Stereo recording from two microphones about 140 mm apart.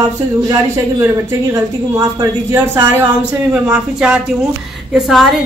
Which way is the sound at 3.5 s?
5° right (ahead or behind).